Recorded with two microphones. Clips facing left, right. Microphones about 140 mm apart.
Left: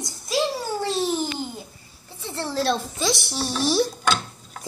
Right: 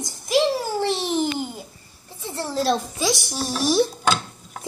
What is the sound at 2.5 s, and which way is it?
A woman's voice, 5° right (ahead or behind).